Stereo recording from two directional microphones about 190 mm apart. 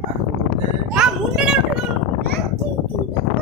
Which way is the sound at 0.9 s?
5° right (ahead or behind).